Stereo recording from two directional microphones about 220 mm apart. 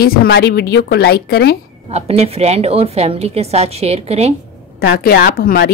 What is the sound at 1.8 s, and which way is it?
A woman's voice, 30° right (ahead or behind).